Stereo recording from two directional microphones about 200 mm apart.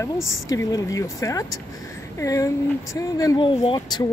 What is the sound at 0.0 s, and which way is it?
Speech, 15° left (ahead or behind).